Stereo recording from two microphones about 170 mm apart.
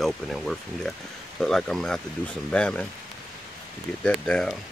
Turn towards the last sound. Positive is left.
turn(degrees=5)  # may be behind; listen again after turning